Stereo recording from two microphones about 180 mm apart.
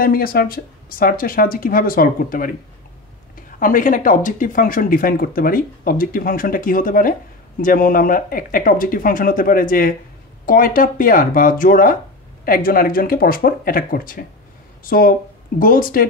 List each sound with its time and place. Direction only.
0.0 s speech: 55° left (ahead or behind)
3.5 s speech: 50° left (ahead or behind)